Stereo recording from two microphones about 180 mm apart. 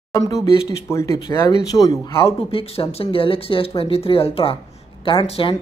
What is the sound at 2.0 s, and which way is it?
Speech, 30° left (ahead or behind).